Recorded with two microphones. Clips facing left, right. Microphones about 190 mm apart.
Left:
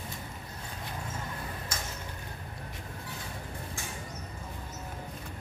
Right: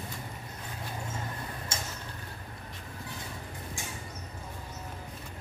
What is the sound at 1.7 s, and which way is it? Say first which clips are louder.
Tick-tock: right 2 dB; 25° right (ahead or behind).